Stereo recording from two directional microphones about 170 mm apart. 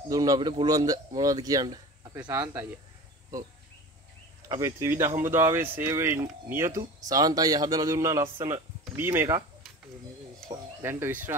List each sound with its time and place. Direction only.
0.1 s a man's voice: 25° right (ahead or behind)
2.1 s speech: 10° right (ahead or behind)
4.6 s a man's voice: 15° right (ahead or behind)
10.8 s speech: 15° right (ahead or behind)